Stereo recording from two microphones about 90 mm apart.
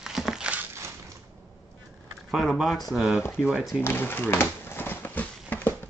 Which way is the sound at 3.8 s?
25° left (ahead or behind).